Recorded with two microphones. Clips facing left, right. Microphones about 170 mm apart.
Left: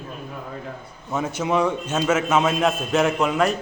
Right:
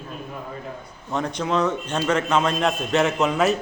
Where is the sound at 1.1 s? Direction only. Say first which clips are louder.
Left 1 dB; 5° left (ahead or behind).